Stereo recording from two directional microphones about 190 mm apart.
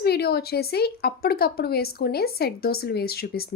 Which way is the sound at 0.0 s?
55° left (ahead or behind).